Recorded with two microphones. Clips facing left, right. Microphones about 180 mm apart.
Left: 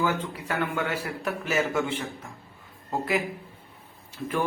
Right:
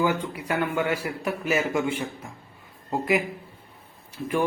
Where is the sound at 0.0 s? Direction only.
15° right (ahead or behind).